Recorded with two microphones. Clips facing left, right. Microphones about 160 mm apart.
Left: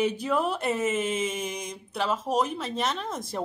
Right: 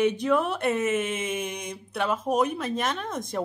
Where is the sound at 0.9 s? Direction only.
55° right (ahead or behind).